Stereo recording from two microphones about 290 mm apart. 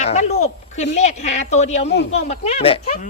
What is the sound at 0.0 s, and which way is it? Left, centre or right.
A woman's voice, left.